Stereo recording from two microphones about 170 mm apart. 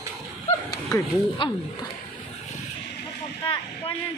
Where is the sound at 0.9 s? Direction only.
30° left (ahead or behind).